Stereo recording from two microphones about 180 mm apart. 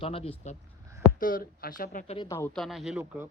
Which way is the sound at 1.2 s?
55° left (ahead or behind).